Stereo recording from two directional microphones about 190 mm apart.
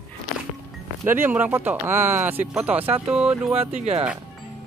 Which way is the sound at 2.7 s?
30° right (ahead or behind).